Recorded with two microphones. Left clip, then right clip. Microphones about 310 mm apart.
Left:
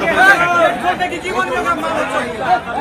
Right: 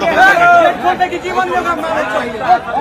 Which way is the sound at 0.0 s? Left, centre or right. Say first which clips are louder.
Right 2 dB; right.